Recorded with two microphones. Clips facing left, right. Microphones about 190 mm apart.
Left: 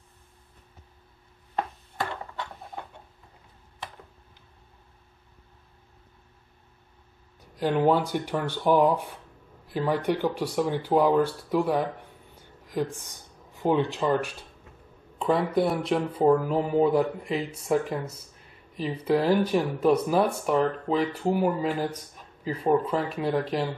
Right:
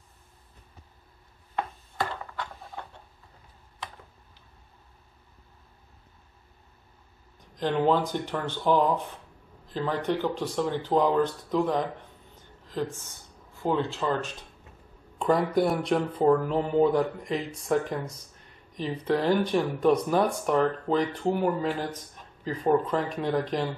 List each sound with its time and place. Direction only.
7.5 s speech: 10° left (ahead or behind)
15.1 s speech: centre (ahead or behind)